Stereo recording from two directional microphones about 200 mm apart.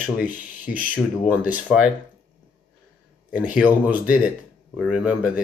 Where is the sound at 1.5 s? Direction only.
5° right (ahead or behind).